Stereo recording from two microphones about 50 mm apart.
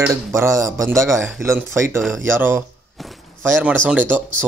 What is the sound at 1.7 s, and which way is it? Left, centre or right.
Speech, right.